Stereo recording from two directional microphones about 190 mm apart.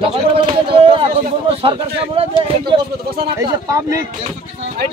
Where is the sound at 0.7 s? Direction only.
30° right (ahead or behind).